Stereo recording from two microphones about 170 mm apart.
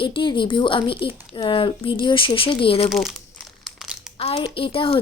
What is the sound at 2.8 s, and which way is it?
Speech, centre (ahead or behind).